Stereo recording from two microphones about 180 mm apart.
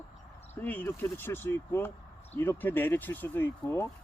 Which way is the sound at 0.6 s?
10° left (ahead or behind).